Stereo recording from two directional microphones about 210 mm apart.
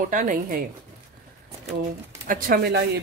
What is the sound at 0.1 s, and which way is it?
Speech, 40° right (ahead or behind).